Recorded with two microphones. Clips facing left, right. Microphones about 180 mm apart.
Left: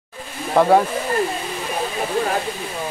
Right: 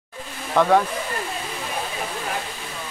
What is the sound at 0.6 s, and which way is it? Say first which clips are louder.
Speech: left 3 dB; 25° left (ahead or behind).